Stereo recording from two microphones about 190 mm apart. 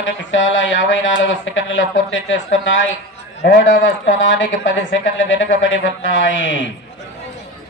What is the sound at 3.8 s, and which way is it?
Speech, 85° left.